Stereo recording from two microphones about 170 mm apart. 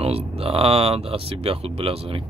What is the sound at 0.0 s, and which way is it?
Speech, 35° right (ahead or behind).